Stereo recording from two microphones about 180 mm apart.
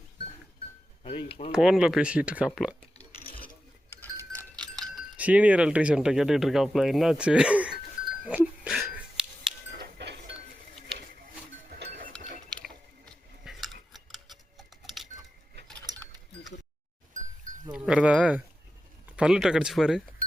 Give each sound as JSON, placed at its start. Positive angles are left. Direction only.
{"t": 1.0, "sound": "speech", "side_deg": 30}
{"t": 1.5, "sound": "speech", "side_deg": -5}
{"t": 4.8, "sound": "speech", "side_deg": -5}
{"t": 8.2, "sound": "dog", "side_deg": -5}
{"t": 9.7, "sound": "music", "side_deg": -65}
{"t": 11.7, "sound": "music", "side_deg": -55}
{"t": 12.5, "sound": "ratchet", "side_deg": 5}
{"t": 13.4, "sound": "cutlery", "side_deg": 0}
{"t": 13.9, "sound": "a sound", "side_deg": 0}
{"t": 16.0, "sound": "a sound", "side_deg": 0}
{"t": 17.7, "sound": "a sound", "side_deg": -5}
{"t": 19.1, "sound": "speech", "side_deg": -5}